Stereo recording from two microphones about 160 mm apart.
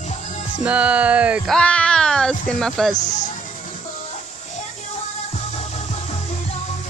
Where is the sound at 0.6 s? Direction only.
10° right (ahead or behind).